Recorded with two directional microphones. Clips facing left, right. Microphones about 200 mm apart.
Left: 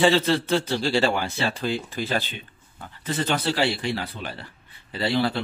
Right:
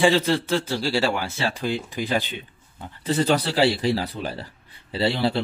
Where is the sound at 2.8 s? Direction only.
30° right (ahead or behind).